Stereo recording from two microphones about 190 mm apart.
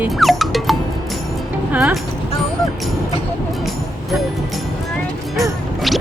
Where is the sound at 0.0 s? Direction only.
Centre (ahead or behind).